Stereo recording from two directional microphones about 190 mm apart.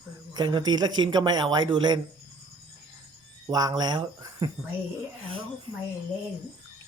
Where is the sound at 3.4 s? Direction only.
20° right (ahead or behind).